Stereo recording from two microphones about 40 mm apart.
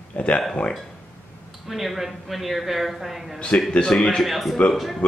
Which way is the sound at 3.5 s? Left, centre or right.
Left.